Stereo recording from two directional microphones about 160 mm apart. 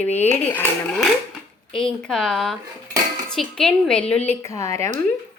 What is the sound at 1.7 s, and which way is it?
A woman's voice, 5° left (ahead or behind).